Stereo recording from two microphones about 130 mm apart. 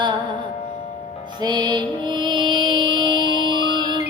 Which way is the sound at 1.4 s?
35° right (ahead or behind).